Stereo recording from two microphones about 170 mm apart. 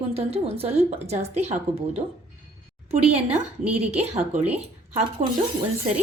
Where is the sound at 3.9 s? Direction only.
35° right (ahead or behind).